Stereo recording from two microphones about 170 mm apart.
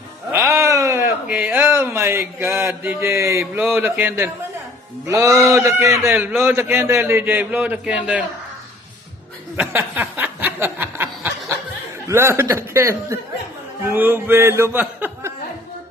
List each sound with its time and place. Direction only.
0.3 s a man's voice: 15° right (ahead or behind)
9.6 s snicker: 10° right (ahead or behind)
12.0 s a man's voice: 15° right (ahead or behind)